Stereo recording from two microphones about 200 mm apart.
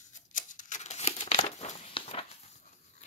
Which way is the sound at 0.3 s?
40° left (ahead or behind).